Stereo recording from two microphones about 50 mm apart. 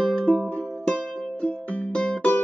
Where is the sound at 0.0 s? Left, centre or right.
Centre.